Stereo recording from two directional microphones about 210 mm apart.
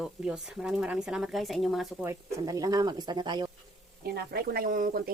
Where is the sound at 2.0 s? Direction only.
15° right (ahead or behind).